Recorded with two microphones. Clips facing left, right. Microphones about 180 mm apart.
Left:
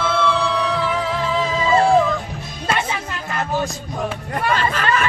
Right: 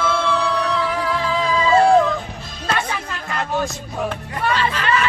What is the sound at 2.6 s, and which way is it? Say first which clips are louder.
Music: left 1 dB; 10° left (ahead or behind).